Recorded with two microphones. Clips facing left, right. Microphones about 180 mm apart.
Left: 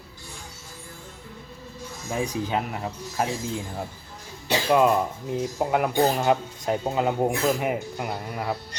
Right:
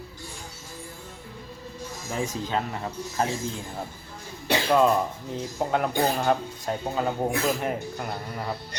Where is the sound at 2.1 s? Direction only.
15° left (ahead or behind).